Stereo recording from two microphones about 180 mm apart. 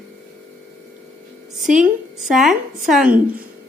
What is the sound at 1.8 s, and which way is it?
A woman's voice, centre (ahead or behind).